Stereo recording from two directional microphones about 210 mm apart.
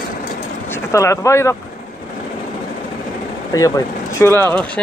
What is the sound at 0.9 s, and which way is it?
Speech, 15° left (ahead or behind).